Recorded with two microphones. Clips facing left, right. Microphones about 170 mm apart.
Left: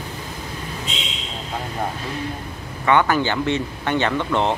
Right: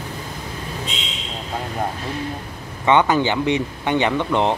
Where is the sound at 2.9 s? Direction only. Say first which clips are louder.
Right 2 dB; 20° right (ahead or behind).